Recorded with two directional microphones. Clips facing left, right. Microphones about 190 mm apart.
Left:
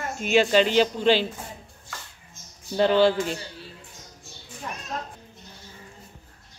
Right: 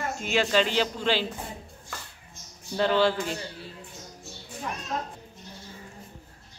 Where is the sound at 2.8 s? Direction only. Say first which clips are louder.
Left 4 dB; 20° left (ahead or behind).